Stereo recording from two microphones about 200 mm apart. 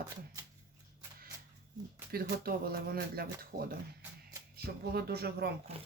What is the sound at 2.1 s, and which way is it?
Speech, 50° right (ahead or behind).